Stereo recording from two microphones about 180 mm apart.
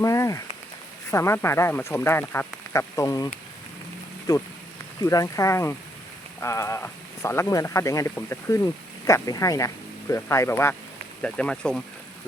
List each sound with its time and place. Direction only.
0.0 s speech: 20° left (ahead or behind)
4.9 s speech: 20° left (ahead or behind)